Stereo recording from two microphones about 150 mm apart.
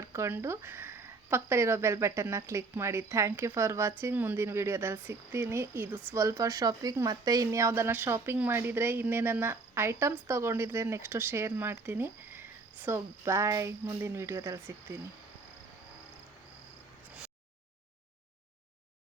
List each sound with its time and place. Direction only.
0.0 s speech: 20° right (ahead or behind)